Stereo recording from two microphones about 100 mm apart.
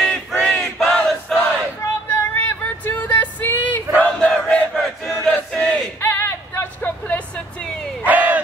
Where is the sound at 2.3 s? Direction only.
20° left (ahead or behind).